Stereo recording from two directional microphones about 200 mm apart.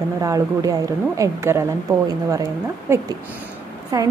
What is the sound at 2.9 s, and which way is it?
A woman's voice, 10° right (ahead or behind).